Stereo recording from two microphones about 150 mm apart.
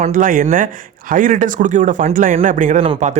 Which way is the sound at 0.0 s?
60° right (ahead or behind).